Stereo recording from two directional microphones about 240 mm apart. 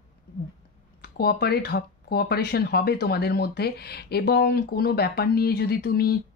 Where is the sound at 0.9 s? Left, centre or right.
Left.